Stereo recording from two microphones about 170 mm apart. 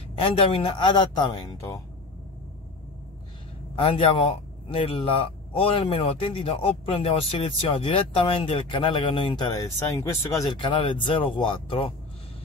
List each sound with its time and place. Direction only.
0.2 s speech: 30° left (ahead or behind)
3.7 s a man's voice: 30° left (ahead or behind)
10.6 s speech: 30° left (ahead or behind)